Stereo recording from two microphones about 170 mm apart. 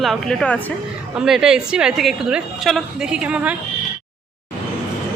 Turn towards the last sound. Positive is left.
turn(degrees=-5)  # may be behind; listen again after turning